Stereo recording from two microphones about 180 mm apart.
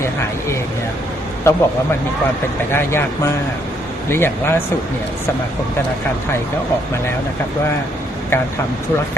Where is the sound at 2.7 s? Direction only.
15° left (ahead or behind).